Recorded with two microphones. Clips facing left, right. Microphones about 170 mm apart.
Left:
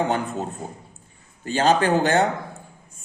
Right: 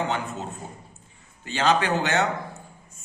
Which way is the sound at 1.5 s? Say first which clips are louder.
Left 4 dB; 40° left (ahead or behind).